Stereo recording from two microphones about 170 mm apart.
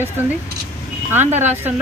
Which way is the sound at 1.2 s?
40° right (ahead or behind).